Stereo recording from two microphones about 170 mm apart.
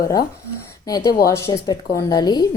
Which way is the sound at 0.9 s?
20° left (ahead or behind).